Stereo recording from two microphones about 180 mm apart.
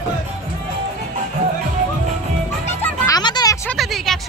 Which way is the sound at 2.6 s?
15° left (ahead or behind).